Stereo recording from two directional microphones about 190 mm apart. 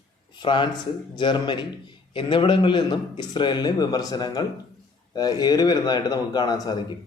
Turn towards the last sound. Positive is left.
turn(degrees=20)  # may be behind; listen again after turning